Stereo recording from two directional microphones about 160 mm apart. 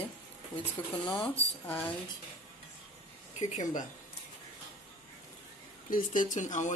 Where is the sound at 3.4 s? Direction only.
50° left (ahead or behind).